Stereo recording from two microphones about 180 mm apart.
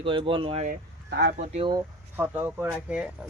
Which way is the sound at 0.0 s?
30° right (ahead or behind).